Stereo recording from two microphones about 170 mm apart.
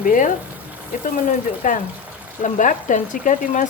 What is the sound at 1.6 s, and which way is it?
A woman's voice, 50° left (ahead or behind).